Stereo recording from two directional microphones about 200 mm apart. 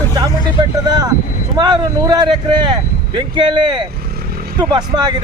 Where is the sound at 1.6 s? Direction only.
20° right (ahead or behind).